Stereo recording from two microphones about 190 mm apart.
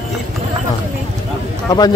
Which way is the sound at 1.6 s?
20° left (ahead or behind).